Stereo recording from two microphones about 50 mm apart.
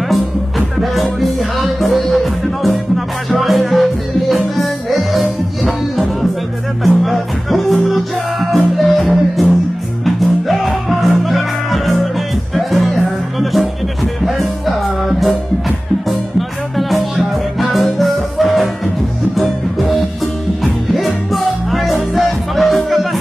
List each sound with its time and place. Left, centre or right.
0.1 s music: centre
3.3 s music: centre